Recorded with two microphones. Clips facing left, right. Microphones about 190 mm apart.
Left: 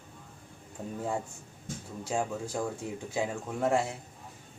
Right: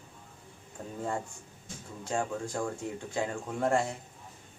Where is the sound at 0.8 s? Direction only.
5° left (ahead or behind).